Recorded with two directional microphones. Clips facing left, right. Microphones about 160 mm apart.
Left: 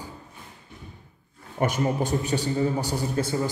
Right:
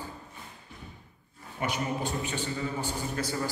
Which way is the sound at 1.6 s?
45° left (ahead or behind).